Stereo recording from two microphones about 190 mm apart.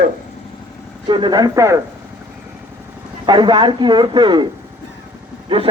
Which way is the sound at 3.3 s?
25° right (ahead or behind).